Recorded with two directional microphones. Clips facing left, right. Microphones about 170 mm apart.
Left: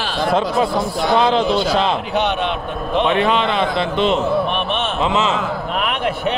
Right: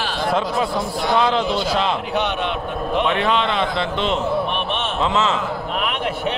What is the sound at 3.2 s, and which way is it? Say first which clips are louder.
Speech: left 2 dB; 10° left (ahead or behind).